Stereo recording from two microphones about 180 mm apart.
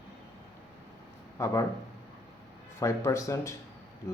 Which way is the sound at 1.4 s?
15° left (ahead or behind).